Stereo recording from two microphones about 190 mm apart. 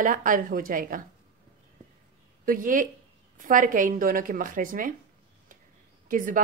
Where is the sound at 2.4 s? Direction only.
45° right (ahead or behind).